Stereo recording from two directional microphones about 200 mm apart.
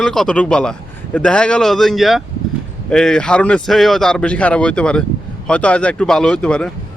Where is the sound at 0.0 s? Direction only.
5° left (ahead or behind).